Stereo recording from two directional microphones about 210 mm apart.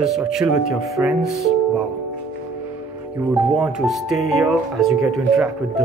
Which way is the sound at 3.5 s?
5° right (ahead or behind).